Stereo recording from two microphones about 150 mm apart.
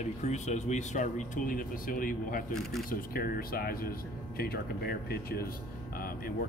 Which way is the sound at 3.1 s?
80° left.